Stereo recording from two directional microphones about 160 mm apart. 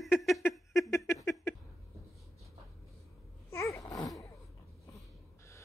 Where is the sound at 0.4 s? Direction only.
15° left (ahead or behind).